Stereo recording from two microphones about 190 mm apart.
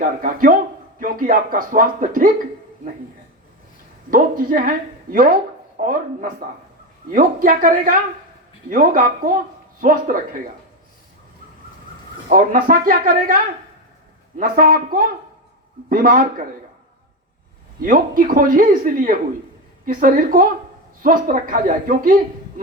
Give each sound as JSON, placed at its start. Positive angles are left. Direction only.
{"t": 0.0, "sound": "speech", "side_deg": -45}
{"t": 4.1, "sound": "a woman's voice", "side_deg": -50}
{"t": 12.3, "sound": "speech", "side_deg": -45}
{"t": 17.7, "sound": "speech", "side_deg": -45}